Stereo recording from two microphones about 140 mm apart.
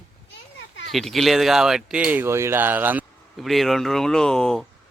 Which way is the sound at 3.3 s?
Centre (ahead or behind).